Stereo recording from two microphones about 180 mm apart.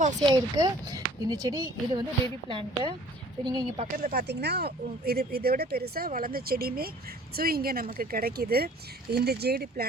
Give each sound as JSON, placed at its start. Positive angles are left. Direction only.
{"t": 0.2, "sound": "speech", "side_deg": -20}
{"t": 3.9, "sound": "speech", "side_deg": -55}